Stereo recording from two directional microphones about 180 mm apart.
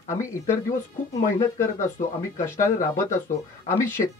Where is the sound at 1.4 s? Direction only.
15° left (ahead or behind).